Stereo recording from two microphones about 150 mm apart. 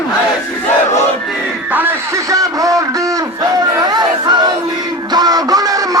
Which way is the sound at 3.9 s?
30° right (ahead or behind).